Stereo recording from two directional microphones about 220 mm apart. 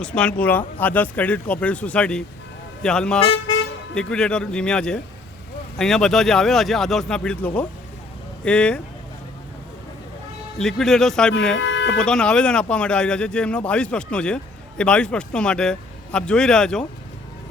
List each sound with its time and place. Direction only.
0.0 s a man's voice: 5° left (ahead or behind)
10.6 s speech: centre (ahead or behind)
11.5 s music: 55° left (ahead or behind)
11.9 s speech: 5° left (ahead or behind)